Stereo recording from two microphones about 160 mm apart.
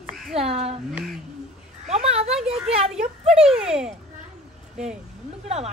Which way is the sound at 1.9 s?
40° right (ahead or behind).